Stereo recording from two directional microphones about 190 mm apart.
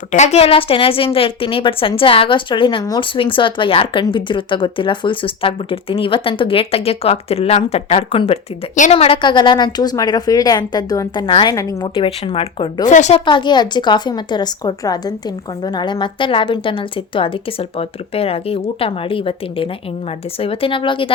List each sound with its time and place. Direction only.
0.1 s a woman's voice: 35° left (ahead or behind)
12.9 s a woman's voice: 40° left (ahead or behind)
13.2 s a woman's voice: 25° left (ahead or behind)